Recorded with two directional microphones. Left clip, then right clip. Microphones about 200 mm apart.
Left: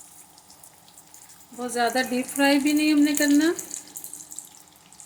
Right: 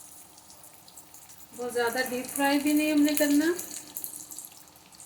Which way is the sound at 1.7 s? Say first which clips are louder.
Left 4 dB; 55° left (ahead or behind).